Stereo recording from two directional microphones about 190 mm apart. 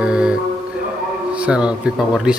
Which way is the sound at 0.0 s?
5° right (ahead or behind).